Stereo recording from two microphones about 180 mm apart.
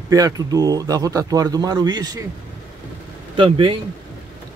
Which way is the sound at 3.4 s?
30° right (ahead or behind).